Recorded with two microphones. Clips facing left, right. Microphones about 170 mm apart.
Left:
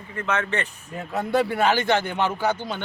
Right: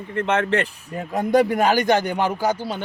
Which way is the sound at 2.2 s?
10° right (ahead or behind).